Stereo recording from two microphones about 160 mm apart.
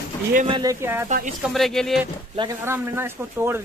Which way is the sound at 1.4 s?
Centre (ahead or behind).